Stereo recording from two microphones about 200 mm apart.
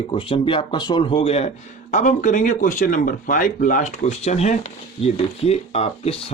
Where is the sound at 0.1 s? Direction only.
25° left (ahead or behind).